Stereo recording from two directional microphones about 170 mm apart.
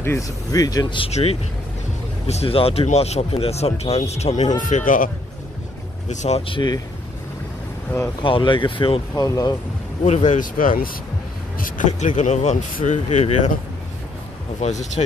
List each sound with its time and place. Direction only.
0.0 s speech: 15° left (ahead or behind); by 5.1 s 50° left (ahead or behind)
6.0 s speech: 40° left (ahead or behind)
8.2 s speech: 30° left (ahead or behind)
9.1 s speech: 20° left (ahead or behind)
10.0 s speech: 45° left (ahead or behind)
14.6 s speech: 40° left (ahead or behind)